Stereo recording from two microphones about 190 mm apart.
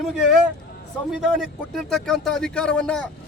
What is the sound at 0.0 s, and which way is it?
Speech, centre (ahead or behind).